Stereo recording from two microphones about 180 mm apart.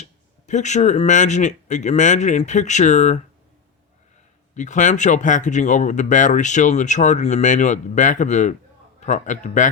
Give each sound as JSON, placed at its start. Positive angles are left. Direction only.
{"t": 0.0, "sound": "speech", "side_deg": 40}
{"t": 4.5, "sound": "speech", "side_deg": 40}